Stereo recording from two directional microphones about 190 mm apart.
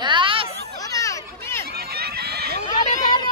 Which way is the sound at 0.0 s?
25° right (ahead or behind).